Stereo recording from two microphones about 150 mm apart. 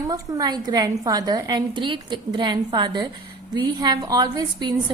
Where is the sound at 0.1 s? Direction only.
25° right (ahead or behind).